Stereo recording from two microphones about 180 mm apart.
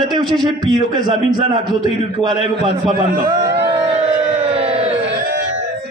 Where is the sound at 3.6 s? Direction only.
30° right (ahead or behind).